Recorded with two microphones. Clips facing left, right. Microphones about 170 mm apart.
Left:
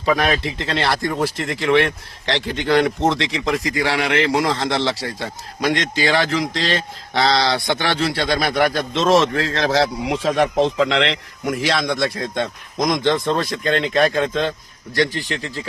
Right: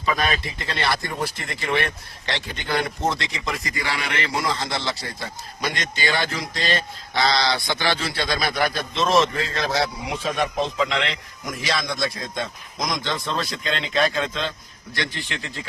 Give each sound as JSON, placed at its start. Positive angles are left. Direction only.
{"t": 0.1, "sound": "speech", "side_deg": 75}
{"t": 5.5, "sound": "a man's voice", "side_deg": 80}
{"t": 14.9, "sound": "speech", "side_deg": 40}